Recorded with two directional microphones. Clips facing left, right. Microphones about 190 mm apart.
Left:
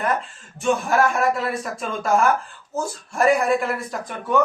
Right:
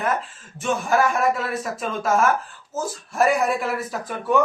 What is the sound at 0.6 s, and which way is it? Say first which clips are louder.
A man's voice: left 1 dB; centre (ahead or behind).